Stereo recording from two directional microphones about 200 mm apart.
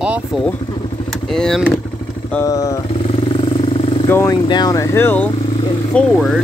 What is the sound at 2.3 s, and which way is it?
Speech, 15° left (ahead or behind).